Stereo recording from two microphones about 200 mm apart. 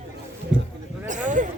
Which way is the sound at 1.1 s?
40° right (ahead or behind).